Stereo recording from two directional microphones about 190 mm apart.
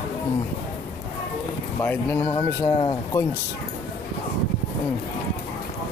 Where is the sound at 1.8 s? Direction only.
10° left (ahead or behind).